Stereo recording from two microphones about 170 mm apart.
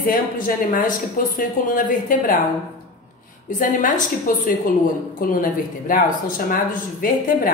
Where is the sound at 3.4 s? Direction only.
50° left (ahead or behind).